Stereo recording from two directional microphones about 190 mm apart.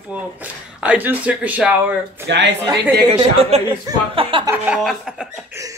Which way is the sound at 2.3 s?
70° right (ahead or behind).